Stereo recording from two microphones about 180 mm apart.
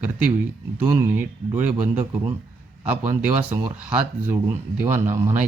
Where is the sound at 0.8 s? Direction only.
15° right (ahead or behind).